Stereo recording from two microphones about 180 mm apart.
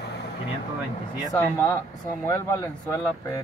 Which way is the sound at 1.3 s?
15° left (ahead or behind).